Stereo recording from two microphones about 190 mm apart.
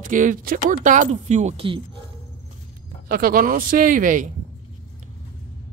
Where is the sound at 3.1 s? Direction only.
50° right (ahead or behind).